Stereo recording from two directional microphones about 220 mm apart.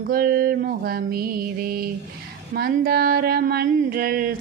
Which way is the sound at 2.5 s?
45° right (ahead or behind).